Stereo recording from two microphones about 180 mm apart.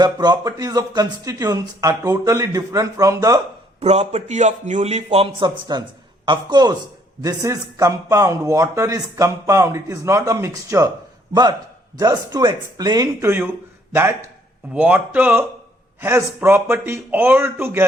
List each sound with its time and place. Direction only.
0.0 s speech: 20° right (ahead or behind)
3.8 s a man's voice: 35° right (ahead or behind); by 10.8 s 15° right (ahead or behind)
11.9 s a man's voice: 20° right (ahead or behind)